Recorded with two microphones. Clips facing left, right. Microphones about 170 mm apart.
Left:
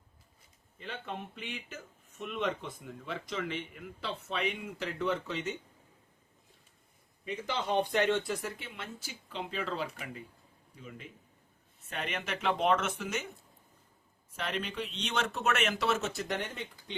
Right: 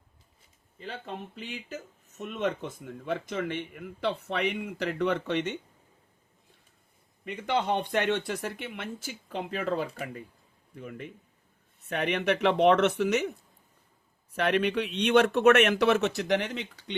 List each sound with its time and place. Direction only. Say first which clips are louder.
0.8 s speech: right 2 dB; 35° right (ahead or behind); by 5.5 s 65° right (ahead or behind)
7.3 s a man's voice: right 5 dB; 60° right (ahead or behind)
14.3 s a man's voice: right 10 dB; 70° right (ahead or behind)